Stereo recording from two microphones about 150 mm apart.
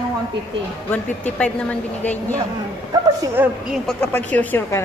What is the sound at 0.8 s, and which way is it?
A woman's voice, 10° left (ahead or behind).